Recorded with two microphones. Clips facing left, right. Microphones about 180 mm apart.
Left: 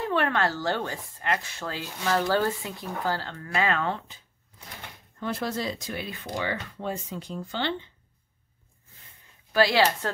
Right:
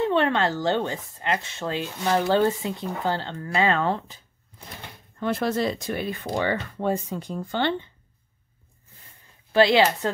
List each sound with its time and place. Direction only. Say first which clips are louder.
0.0 s speech: right 4 dB; 25° right (ahead or behind)
5.2 s speech: right 6 dB; 60° right (ahead or behind)
9.5 s a woman's voice: right 5 dB; 25° right (ahead or behind)